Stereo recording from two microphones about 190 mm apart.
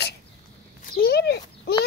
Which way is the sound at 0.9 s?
55° left (ahead or behind).